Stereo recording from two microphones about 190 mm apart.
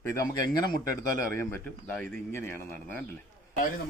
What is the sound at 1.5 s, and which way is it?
Speech, 10° left (ahead or behind).